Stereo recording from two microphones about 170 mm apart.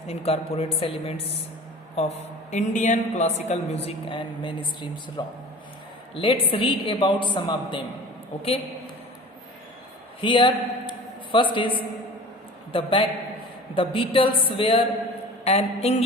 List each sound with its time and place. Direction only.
0.1 s a man's voice: 35° left (ahead or behind)
2.5 s a man's voice: 45° left (ahead or behind)
10.2 s a man's voice: 30° left (ahead or behind)